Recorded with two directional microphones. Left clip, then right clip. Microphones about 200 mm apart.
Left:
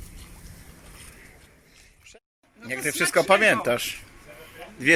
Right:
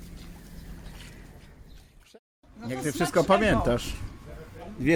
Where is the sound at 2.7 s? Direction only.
Centre (ahead or behind).